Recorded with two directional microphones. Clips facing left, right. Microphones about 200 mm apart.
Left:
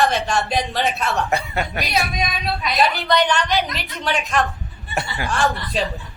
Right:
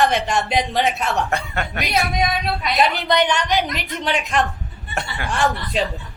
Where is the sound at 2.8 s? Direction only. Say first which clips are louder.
Even; 20° right (ahead or behind).